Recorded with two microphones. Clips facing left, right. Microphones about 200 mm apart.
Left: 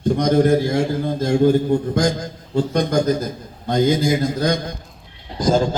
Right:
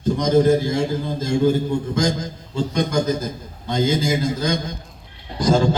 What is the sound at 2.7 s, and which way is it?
A man's voice, 55° left (ahead or behind).